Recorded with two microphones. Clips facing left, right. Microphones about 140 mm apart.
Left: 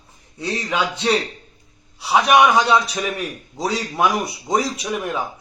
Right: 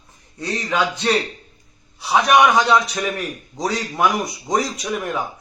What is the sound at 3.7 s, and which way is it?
Speech, 25° left (ahead or behind).